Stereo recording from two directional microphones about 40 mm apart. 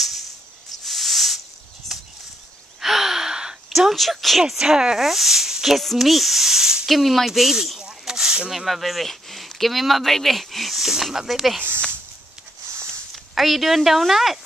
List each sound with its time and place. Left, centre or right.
0.8 s a sound: centre
2.8 s gasp: centre
4.0 s speech: centre
4.4 s speech: centre
5.9 s a sound: centre
6.9 s speech: centre
7.8 s a sound: centre
8.5 s speech: centre
13.1 s speech: centre